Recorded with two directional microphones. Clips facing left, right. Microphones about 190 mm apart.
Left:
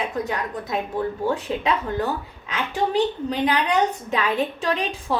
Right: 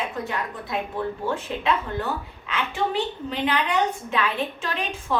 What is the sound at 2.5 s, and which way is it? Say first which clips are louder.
A woman's voice: left 2 dB; 40° left (ahead or behind).